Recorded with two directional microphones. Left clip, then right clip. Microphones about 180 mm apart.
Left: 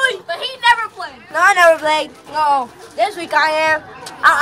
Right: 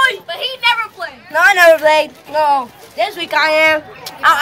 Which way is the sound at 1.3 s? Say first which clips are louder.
Right 2 dB; 10° left (ahead or behind).